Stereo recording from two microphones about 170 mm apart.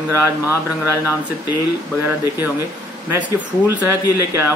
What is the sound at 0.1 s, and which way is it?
Speech, 15° left (ahead or behind).